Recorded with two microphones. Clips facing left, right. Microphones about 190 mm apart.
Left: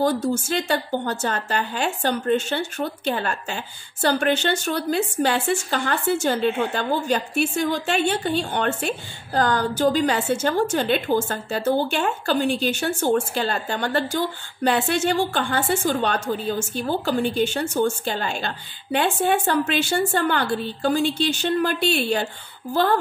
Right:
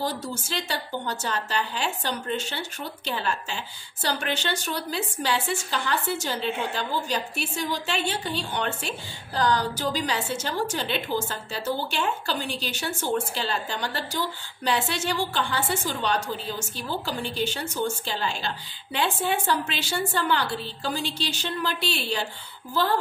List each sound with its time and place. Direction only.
0.0 s a woman's voice: 50° left (ahead or behind)